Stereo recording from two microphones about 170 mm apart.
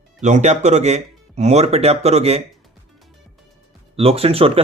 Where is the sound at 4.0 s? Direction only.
35° right (ahead or behind).